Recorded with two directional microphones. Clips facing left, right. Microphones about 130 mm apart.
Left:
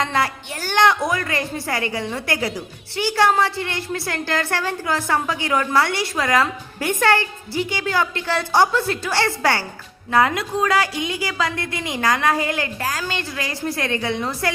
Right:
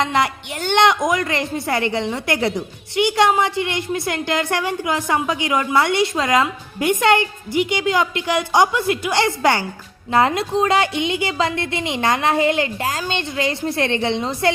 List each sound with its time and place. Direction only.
0.0 s a woman's voice: 20° right (ahead or behind)